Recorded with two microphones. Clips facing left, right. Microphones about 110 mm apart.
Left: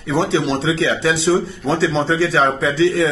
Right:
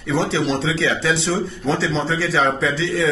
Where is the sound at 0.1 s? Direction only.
15° left (ahead or behind).